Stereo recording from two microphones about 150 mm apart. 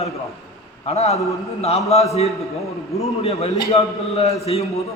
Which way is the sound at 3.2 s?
40° left (ahead or behind).